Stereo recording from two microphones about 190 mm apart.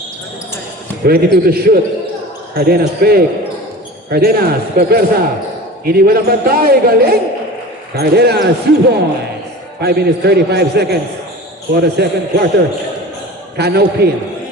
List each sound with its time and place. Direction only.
1.0 s a man's voice: 55° right (ahead or behind)
13.6 s a man's voice: 60° right (ahead or behind)